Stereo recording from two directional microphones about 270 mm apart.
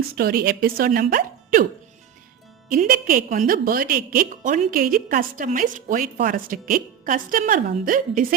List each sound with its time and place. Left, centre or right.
0.2 s a woman's voice: right
2.6 s a woman's voice: right